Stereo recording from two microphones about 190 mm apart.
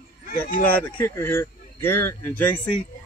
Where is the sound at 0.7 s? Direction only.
10° left (ahead or behind).